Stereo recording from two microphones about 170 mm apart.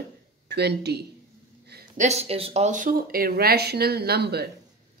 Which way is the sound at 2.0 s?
40° right (ahead or behind).